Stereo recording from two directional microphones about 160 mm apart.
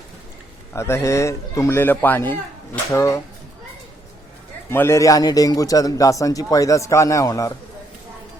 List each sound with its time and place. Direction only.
0.7 s a man's voice: 15° left (ahead or behind)
4.7 s a man's voice: 15° left (ahead or behind)